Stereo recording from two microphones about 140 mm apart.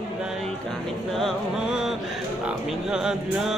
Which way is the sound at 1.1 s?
Centre (ahead or behind).